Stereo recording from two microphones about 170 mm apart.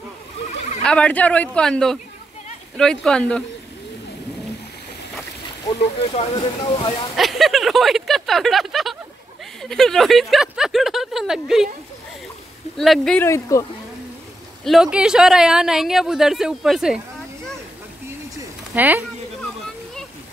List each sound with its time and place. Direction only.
0.4 s a sound: 40° left (ahead or behind)
0.8 s speech: 5° left (ahead or behind)
5.7 s speech: 35° left (ahead or behind)
7.2 s speech: centre (ahead or behind)
12.7 s speech: centre (ahead or behind)
13.3 s speech: 20° left (ahead or behind)
14.6 s speech: centre (ahead or behind)
18.8 s speech: 10° right (ahead or behind)